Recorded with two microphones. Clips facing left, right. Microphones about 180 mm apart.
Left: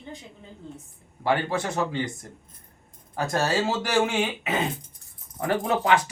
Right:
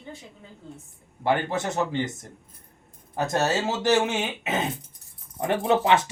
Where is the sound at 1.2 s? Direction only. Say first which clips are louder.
Even; 20° right (ahead or behind).